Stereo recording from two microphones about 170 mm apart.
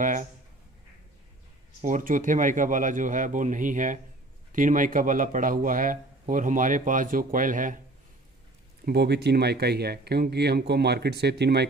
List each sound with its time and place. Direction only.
0.0 s a man's voice: 50° right (ahead or behind)
1.8 s a man's voice: 50° right (ahead or behind)
8.8 s speech: 80° right